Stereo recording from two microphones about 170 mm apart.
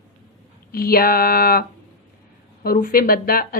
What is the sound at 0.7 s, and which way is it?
A woman's voice, 60° left (ahead or behind).